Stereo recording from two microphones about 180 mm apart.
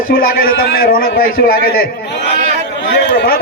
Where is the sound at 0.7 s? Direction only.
55° left (ahead or behind).